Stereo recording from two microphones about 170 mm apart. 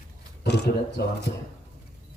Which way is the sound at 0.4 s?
80° left.